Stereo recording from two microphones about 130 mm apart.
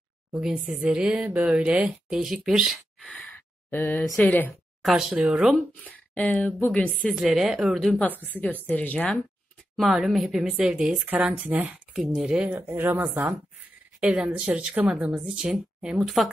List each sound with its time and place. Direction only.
0.3 s speech: 5° right (ahead or behind); by 4.6 s 10° left (ahead or behind)
4.8 s speech: 5° right (ahead or behind)
5.9 s speech: 10° left (ahead or behind)
7.2 s speech: 5° right (ahead or behind)
9.8 s speech: centre (ahead or behind)